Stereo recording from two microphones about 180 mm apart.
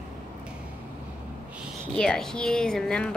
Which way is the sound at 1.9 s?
5° left (ahead or behind).